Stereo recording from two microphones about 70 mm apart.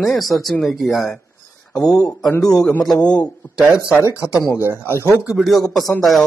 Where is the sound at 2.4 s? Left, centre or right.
Centre.